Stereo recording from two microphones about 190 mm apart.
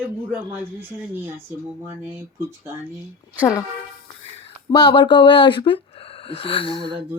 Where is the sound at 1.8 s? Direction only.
10° right (ahead or behind).